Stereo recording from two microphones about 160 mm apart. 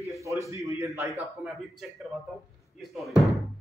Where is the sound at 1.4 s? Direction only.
5° right (ahead or behind).